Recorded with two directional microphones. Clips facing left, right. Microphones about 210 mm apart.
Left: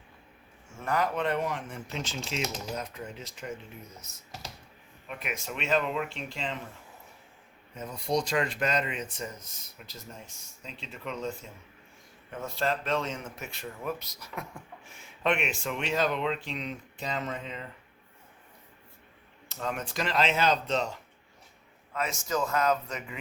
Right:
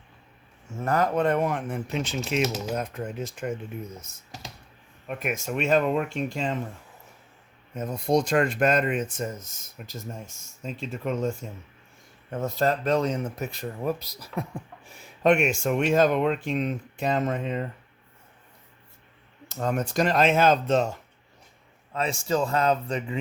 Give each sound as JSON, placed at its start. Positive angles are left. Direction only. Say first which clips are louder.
{"t": 0.8, "sound": "speech", "louder": "right 5 dB", "side_deg": -45}
{"t": 5.0, "sound": "speech", "louder": "right 7 dB", "side_deg": -45}
{"t": 7.8, "sound": "speech", "louder": "right 6 dB", "side_deg": -50}
{"t": 19.5, "sound": "speech", "louder": "right 7 dB", "side_deg": -45}
{"t": 21.9, "sound": "speech", "louder": "right 5 dB", "side_deg": -30}